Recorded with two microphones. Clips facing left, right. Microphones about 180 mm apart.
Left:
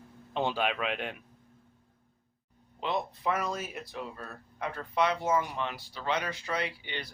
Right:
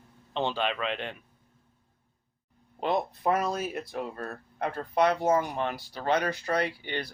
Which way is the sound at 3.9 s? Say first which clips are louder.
Right 5 dB; 50° right (ahead or behind).